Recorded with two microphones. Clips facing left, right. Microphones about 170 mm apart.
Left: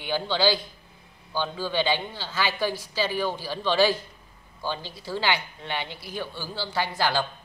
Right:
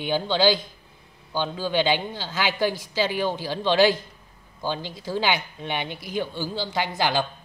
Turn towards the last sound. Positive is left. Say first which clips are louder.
# right 1 dB
turn(degrees=-15)  # may be behind; listen again after turning